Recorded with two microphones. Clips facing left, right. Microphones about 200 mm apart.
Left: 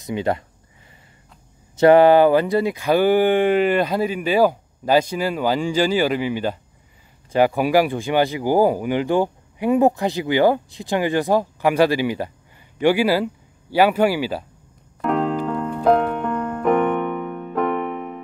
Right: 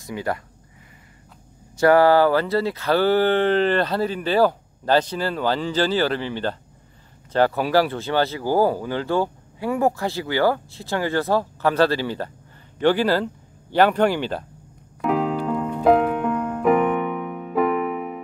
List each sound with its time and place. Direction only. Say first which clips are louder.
0.0 s speech: left 4 dB; 25° left (ahead or behind)
1.8 s speech: left 3 dB; 20° left (ahead or behind)
15.0 s music: left 1 dB; centre (ahead or behind)